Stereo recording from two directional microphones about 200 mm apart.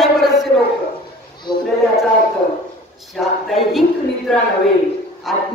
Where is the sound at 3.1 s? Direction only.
Centre (ahead or behind).